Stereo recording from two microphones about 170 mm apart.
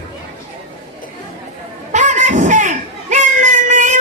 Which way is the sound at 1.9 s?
45° right (ahead or behind).